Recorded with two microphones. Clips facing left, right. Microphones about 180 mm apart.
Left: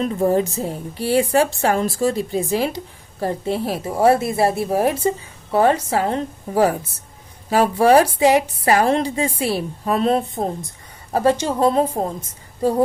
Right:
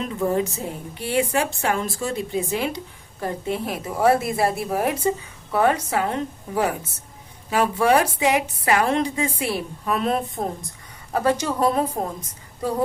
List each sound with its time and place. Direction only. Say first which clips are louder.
0.0 s a woman's voice: left 5 dB; 35° left (ahead or behind)